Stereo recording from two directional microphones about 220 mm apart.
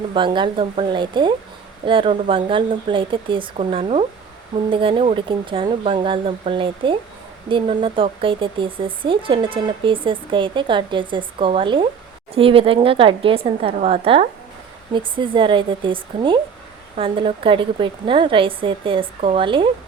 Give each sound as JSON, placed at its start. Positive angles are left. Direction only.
{"t": 0.1, "sound": "speech", "side_deg": -20}